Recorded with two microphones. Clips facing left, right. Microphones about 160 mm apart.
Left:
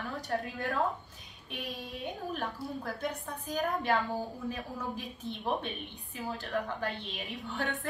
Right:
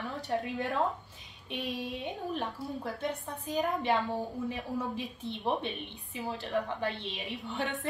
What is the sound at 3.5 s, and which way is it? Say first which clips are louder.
Speech: right 1 dB; 20° right (ahead or behind).